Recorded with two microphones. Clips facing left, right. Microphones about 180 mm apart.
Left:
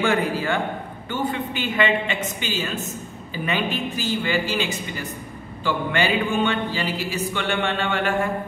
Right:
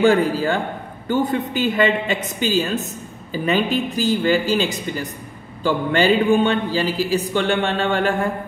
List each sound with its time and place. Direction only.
0.0 s a man's voice: 35° right (ahead or behind)